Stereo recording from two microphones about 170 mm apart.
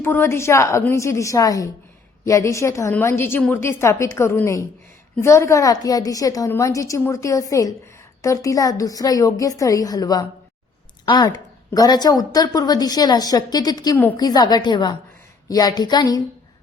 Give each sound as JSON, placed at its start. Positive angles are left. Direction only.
{"t": 0.0, "sound": "a woman's voice", "side_deg": 15}